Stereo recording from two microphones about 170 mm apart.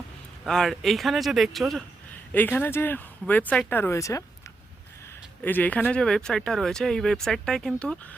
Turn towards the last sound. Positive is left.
turn(degrees=0)  # may be behind; listen again after turning